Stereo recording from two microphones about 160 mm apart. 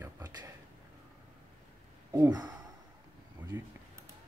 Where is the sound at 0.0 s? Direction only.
25° right (ahead or behind).